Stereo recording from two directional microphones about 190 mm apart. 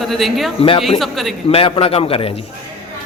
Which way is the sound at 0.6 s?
30° left (ahead or behind).